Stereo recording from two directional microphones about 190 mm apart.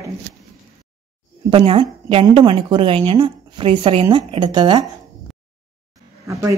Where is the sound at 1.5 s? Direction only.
25° right (ahead or behind).